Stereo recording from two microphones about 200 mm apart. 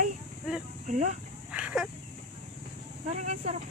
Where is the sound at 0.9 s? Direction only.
35° right (ahead or behind).